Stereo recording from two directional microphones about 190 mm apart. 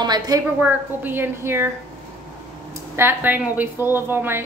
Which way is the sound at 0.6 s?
10° right (ahead or behind).